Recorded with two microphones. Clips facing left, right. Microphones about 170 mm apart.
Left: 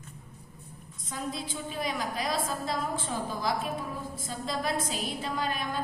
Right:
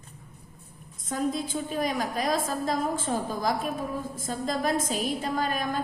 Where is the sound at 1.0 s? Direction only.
50° right (ahead or behind).